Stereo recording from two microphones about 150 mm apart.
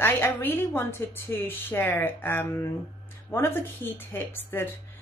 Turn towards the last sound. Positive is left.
turn(degrees=15)  # may be behind; listen again after turning